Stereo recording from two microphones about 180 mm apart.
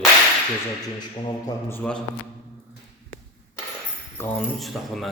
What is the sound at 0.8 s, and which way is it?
A man's voice, 25° left (ahead or behind).